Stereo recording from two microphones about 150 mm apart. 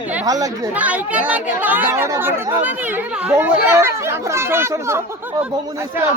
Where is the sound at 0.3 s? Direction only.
25° right (ahead or behind).